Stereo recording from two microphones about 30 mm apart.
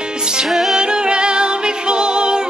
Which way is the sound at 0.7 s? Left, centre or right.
Right.